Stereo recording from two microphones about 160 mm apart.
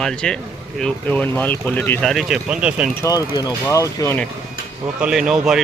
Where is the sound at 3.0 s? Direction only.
20° left (ahead or behind).